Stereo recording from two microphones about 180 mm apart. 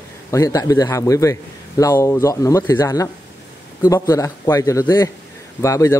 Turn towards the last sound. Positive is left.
turn(degrees=15)  # may be behind; listen again after turning